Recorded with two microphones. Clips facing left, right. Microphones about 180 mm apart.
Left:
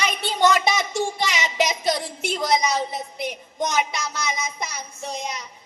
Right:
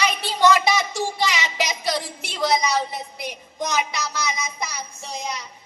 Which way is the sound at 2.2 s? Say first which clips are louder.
Left 1 dB; 50° left (ahead or behind).